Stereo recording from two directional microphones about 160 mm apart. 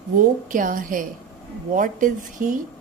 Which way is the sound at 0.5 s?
55° right (ahead or behind).